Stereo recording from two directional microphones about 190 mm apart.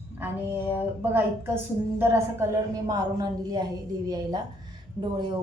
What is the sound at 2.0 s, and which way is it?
A woman's voice, 15° right (ahead or behind).